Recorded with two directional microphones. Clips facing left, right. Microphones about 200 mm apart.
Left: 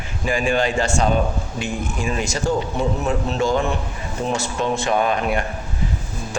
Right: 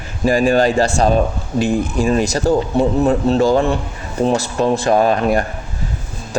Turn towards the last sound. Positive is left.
turn(degrees=-35)  # may be behind; listen again after turning